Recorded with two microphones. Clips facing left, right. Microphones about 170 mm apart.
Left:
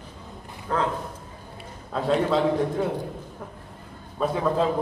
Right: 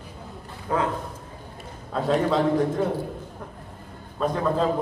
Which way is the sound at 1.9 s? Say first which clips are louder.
Even; centre (ahead or behind).